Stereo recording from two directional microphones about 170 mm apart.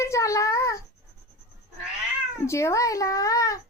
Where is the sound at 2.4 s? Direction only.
15° left (ahead or behind).